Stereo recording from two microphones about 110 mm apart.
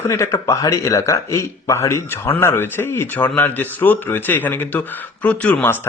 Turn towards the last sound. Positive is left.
turn(degrees=10)  # may be behind; listen again after turning